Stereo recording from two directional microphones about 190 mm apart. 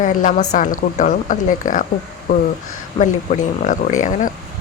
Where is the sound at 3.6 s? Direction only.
45° left (ahead or behind).